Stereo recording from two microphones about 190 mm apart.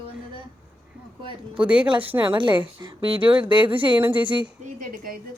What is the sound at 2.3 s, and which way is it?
Speech, 25° right (ahead or behind).